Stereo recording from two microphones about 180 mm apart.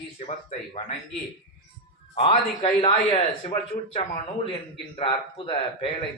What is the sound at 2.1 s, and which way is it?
Speech, 30° left (ahead or behind).